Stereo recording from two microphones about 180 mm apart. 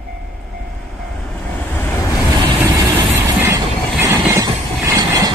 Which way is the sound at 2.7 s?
20° right (ahead or behind).